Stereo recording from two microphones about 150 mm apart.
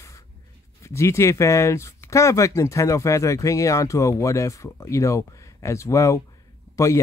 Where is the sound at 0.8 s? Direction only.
20° left (ahead or behind).